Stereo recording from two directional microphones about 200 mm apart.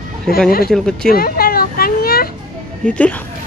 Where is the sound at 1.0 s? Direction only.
50° left (ahead or behind).